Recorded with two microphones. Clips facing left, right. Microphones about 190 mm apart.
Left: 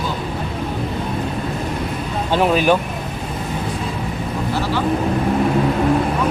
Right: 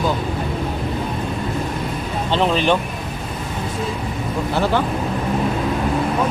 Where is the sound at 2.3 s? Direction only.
10° left (ahead or behind).